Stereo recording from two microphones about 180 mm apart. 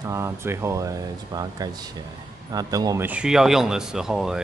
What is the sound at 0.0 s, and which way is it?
Speech, 15° right (ahead or behind).